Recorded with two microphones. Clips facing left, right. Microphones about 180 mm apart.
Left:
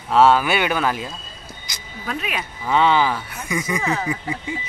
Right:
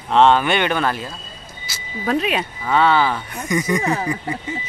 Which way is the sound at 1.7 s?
15° left (ahead or behind).